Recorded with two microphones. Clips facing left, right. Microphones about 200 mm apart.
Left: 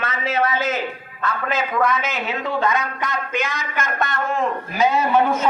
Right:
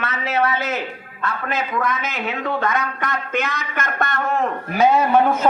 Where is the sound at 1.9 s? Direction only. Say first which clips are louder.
Left 1 dB; 55° right (ahead or behind).